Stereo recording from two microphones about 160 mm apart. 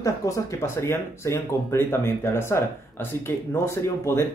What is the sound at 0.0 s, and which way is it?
Speech, 20° left (ahead or behind).